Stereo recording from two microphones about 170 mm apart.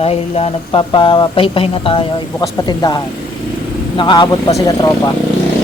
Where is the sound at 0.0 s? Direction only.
35° left (ahead or behind).